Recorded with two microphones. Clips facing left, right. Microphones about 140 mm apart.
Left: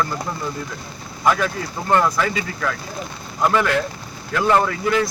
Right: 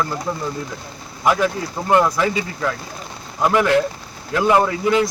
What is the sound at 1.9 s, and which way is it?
Speech, 15° right (ahead or behind).